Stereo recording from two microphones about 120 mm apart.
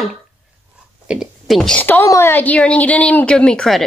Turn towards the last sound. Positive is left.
turn(degrees=5)  # may be behind; listen again after turning